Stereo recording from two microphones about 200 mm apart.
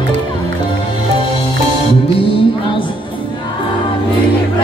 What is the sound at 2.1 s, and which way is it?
Music, 30° left (ahead or behind).